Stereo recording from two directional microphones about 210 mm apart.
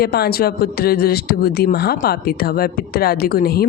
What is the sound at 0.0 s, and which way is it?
Speech, 50° left (ahead or behind).